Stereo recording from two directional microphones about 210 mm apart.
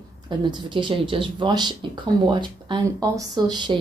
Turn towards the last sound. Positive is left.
turn(degrees=-20)  # may be behind; listen again after turning